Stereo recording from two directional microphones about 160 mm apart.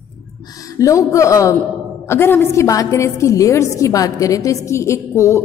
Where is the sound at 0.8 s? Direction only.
20° left (ahead or behind).